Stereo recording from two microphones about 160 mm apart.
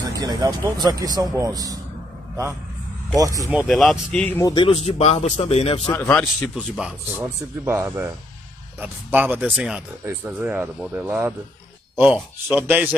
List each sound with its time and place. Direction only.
0.0 s speech: 20° right (ahead or behind)
3.2 s speech: 20° right (ahead or behind)
3.6 s speech: centre (ahead or behind)
4.4 s speech: 20° left (ahead or behind)
4.6 s a man's voice: 40° left (ahead or behind)
5.9 s speech: 10° left (ahead or behind)
6.8 s speech: 15° right (ahead or behind)